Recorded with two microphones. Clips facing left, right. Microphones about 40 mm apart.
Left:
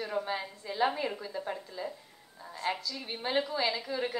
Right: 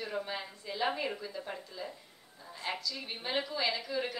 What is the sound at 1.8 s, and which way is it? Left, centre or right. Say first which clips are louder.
Speech: left 4 dB; centre.